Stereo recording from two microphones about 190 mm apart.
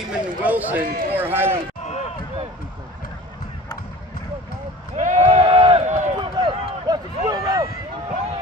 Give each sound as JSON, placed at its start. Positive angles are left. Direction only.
{"t": 0.1, "sound": "speech", "side_deg": -10}
{"t": 0.7, "sound": "a man's voice", "side_deg": -50}
{"t": 1.1, "sound": "speech", "side_deg": -10}
{"t": 4.9, "sound": "a sound", "side_deg": -40}
{"t": 6.1, "sound": "run", "side_deg": -25}